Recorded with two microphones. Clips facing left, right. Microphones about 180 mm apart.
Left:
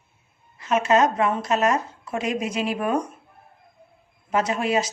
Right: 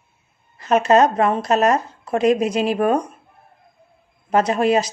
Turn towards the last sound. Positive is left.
turn(degrees=-40)  # may be behind; listen again after turning